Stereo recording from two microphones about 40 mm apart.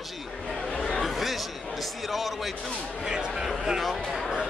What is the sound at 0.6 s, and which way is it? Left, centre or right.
Chatter, centre.